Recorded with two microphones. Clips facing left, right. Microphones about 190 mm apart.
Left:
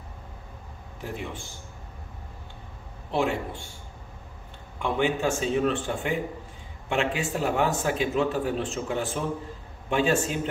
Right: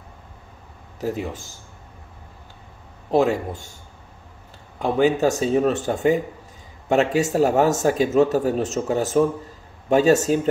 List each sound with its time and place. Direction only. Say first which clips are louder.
1.0 s speech: right 8 dB; 40° right (ahead or behind)
3.1 s speech: right 7 dB; 40° right (ahead or behind)
4.7 s speech: right 7 dB; 35° right (ahead or behind)